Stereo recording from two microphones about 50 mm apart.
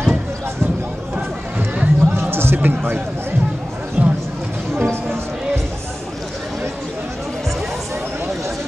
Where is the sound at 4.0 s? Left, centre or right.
Right.